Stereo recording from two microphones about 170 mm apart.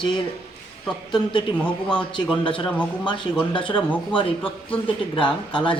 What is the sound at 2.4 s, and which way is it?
A man's voice, 30° left (ahead or behind).